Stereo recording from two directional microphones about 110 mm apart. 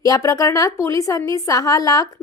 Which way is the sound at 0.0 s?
30° left (ahead or behind).